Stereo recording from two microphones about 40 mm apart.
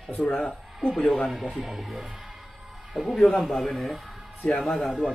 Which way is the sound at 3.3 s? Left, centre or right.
Centre.